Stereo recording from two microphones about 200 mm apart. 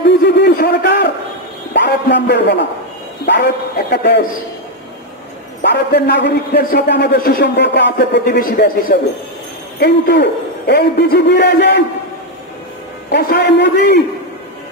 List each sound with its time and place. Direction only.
0.0 s a sound: 55° left (ahead or behind)
3.9 s a man's voice: 55° left (ahead or behind)
5.6 s a man's voice: 55° left (ahead or behind)
13.1 s a man's voice: 55° left (ahead or behind)